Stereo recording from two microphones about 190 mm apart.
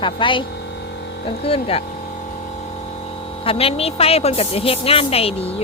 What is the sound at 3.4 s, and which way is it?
A woman's voice, 30° left (ahead or behind).